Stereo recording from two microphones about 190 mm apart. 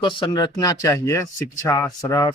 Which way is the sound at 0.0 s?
25° left (ahead or behind).